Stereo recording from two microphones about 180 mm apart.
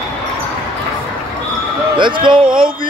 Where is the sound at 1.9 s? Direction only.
25° right (ahead or behind).